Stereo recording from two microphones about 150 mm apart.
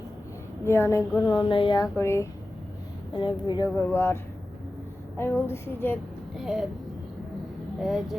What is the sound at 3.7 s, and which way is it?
Speech, 15° left (ahead or behind).